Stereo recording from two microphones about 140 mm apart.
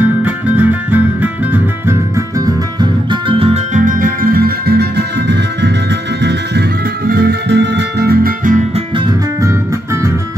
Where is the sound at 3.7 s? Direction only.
70° right (ahead or behind); by 4.6 s 90° right.